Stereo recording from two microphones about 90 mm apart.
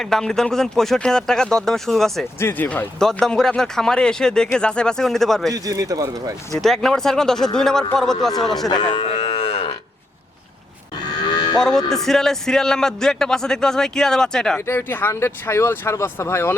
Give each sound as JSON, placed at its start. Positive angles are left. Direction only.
{"t": 0.0, "sound": "speech", "side_deg": 5}
{"t": 2.4, "sound": "speech", "side_deg": 20}
{"t": 3.0, "sound": "a man's voice", "side_deg": 5}
{"t": 5.5, "sound": "speech", "side_deg": -40}
{"t": 6.6, "sound": "speech", "side_deg": 5}
{"t": 8.7, "sound": "moo", "side_deg": 55}
{"t": 11.3, "sound": "moo", "side_deg": 50}
{"t": 11.9, "sound": "a man's voice", "side_deg": 5}
{"t": 14.7, "sound": "speech", "side_deg": 25}